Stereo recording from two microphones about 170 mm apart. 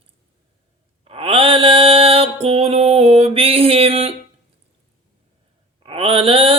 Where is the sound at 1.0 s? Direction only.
35° right (ahead or behind).